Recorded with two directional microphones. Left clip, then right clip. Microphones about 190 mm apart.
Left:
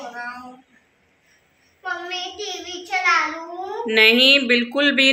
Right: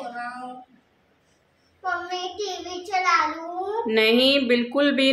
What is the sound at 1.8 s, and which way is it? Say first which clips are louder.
A child's voice: even; 35° right (ahead or behind).